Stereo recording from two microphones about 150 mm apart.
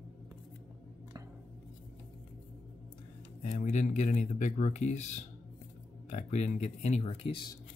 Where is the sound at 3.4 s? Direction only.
50° left (ahead or behind).